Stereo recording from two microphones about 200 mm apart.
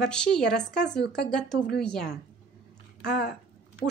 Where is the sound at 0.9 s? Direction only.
55° left (ahead or behind).